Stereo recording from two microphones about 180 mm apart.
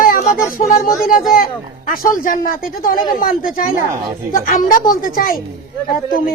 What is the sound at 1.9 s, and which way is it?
Speech, 50° left (ahead or behind).